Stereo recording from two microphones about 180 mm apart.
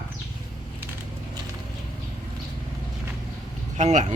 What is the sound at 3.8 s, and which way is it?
Speech, 40° right (ahead or behind).